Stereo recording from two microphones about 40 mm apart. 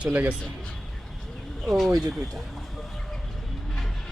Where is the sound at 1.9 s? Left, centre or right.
Centre.